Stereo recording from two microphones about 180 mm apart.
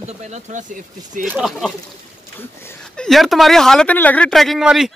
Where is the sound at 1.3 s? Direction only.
5° right (ahead or behind).